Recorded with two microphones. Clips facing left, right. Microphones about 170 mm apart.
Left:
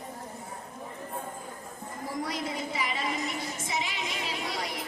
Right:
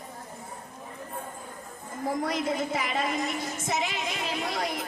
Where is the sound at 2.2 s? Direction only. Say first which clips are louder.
Right 3 dB; 50° right (ahead or behind).